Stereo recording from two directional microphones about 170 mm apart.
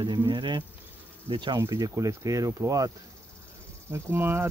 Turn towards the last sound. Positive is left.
turn(degrees=-15)  # may be behind; listen again after turning